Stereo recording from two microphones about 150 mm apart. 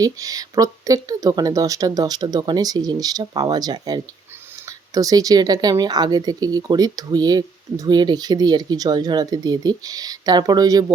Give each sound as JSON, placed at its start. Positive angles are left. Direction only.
{"t": 0.0, "sound": "speech", "side_deg": -25}